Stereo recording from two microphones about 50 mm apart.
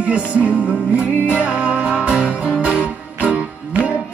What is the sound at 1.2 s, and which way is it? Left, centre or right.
Music, right.